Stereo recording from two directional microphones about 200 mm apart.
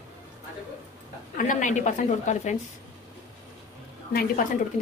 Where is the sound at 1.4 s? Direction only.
40° left (ahead or behind).